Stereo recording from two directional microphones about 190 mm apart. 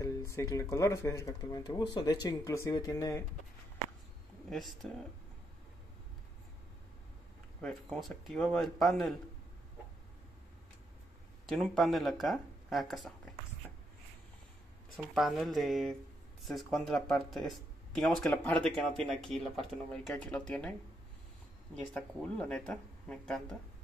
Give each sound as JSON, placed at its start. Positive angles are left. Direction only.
{"t": 0.0, "sound": "speech", "side_deg": 15}
{"t": 4.5, "sound": "speech", "side_deg": 0}
{"t": 7.6, "sound": "speech", "side_deg": 0}
{"t": 11.4, "sound": "speech", "side_deg": 0}
{"t": 13.6, "sound": "a sound", "side_deg": 10}
{"t": 15.0, "sound": "speech", "side_deg": 0}
{"t": 21.8, "sound": "speech", "side_deg": 5}